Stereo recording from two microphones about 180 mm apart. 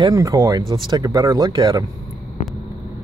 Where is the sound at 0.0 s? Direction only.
20° right (ahead or behind).